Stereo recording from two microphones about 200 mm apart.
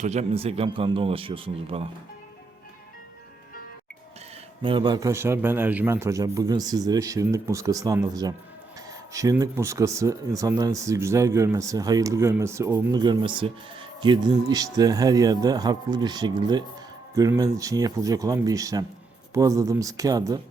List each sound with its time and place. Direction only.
0.0 s speech: 35° right (ahead or behind)
4.6 s speech: 25° right (ahead or behind)